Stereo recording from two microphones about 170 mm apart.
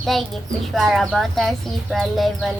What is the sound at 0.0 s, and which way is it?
Speech, centre (ahead or behind).